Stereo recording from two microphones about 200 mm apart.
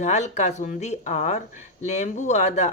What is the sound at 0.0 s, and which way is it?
Speech, 35° left (ahead or behind).